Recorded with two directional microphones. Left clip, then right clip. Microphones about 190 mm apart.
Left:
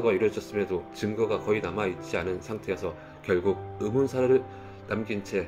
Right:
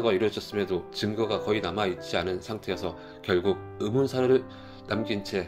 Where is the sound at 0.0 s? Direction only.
30° right (ahead or behind).